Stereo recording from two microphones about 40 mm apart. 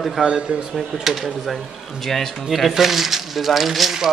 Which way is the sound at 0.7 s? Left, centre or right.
Centre.